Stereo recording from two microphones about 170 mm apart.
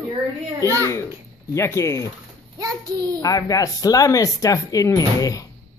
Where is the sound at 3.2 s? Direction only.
20° left (ahead or behind).